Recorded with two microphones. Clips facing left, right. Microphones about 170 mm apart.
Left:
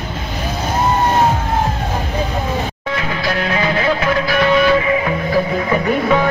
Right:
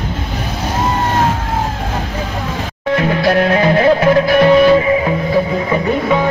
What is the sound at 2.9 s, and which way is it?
Music, 55° right (ahead or behind).